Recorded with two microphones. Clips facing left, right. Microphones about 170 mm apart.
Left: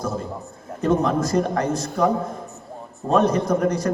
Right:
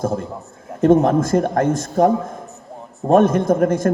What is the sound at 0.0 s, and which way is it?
A man's voice, 50° right (ahead or behind).